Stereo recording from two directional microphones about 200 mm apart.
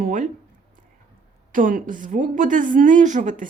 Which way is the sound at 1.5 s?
45° right (ahead or behind).